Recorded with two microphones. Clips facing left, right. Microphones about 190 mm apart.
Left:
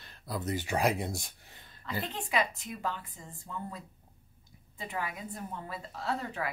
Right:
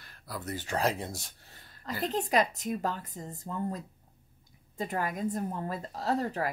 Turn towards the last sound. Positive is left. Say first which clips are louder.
# right 5 dB
turn(degrees=-40)  # may be behind; listen again after turning